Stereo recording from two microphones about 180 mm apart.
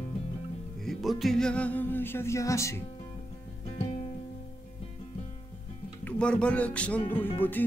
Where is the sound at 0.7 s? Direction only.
Centre (ahead or behind); by 2.8 s 15° left (ahead or behind).